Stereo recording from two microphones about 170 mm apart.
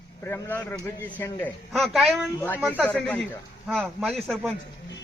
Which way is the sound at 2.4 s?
10° left (ahead or behind).